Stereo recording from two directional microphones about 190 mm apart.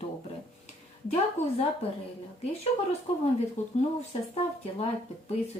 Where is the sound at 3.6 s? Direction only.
35° left (ahead or behind).